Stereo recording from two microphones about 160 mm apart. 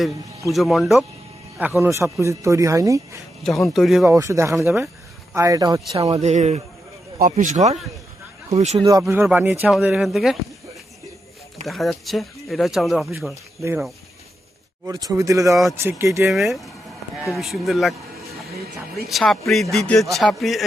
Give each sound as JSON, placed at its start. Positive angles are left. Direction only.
{"t": 0.5, "sound": "speech", "side_deg": 0}
{"t": 1.5, "sound": "a man's voice", "side_deg": -10}
{"t": 3.4, "sound": "speech", "side_deg": 0}
{"t": 4.1, "sound": "a man's voice", "side_deg": -20}
{"t": 6.2, "sound": "speech", "side_deg": -45}
{"t": 9.2, "sound": "speech", "side_deg": -10}
{"t": 11.6, "sound": "speech", "side_deg": 0}
{"t": 14.8, "sound": "a man's voice", "side_deg": -20}
{"t": 16.2, "sound": "speech", "side_deg": 0}
{"t": 19.0, "sound": "speech", "side_deg": 0}